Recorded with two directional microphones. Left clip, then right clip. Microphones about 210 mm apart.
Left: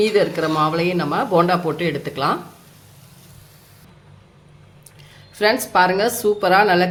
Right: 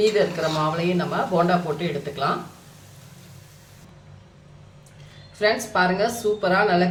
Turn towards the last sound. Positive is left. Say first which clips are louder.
# left 5 dB
turn(degrees=50)  # may be behind; listen again after turning